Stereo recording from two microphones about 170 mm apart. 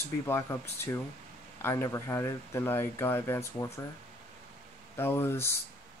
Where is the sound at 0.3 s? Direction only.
15° left (ahead or behind).